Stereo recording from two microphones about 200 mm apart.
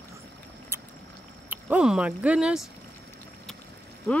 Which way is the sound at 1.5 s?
5° right (ahead or behind).